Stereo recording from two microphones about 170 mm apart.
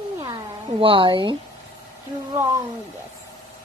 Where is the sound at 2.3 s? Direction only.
15° right (ahead or behind).